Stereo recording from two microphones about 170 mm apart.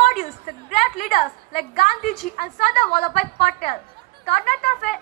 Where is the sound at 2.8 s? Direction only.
40° left (ahead or behind).